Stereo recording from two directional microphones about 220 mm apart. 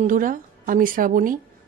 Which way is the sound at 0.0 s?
40° right (ahead or behind).